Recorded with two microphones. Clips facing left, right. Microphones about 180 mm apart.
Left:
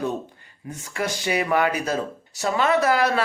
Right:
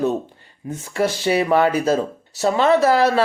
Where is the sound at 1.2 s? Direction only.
30° right (ahead or behind).